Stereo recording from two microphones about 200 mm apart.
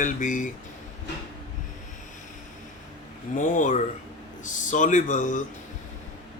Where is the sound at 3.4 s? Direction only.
40° left (ahead or behind).